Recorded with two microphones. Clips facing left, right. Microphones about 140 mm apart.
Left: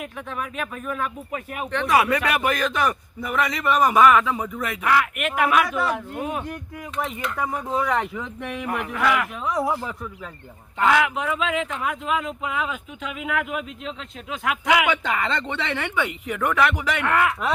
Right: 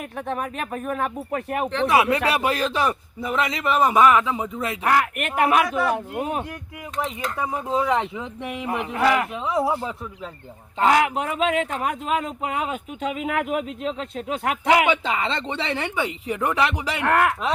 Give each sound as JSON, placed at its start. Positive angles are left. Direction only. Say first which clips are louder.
{"t": 0.3, "sound": "speech", "louder": "right 4 dB", "side_deg": -45}
{"t": 1.7, "sound": "a man's voice", "louder": "even", "side_deg": -25}
{"t": 4.9, "sound": "speech", "louder": "even", "side_deg": -40}
{"t": 7.3, "sound": "speech", "louder": "even", "side_deg": -15}
{"t": 7.7, "sound": "a man's voice", "louder": "right 3 dB", "side_deg": -25}
{"t": 10.8, "sound": "speech", "louder": "right 1 dB", "side_deg": -35}